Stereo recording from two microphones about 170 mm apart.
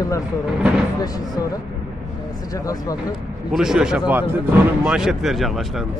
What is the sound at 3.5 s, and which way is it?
A man's voice, 5° right (ahead or behind).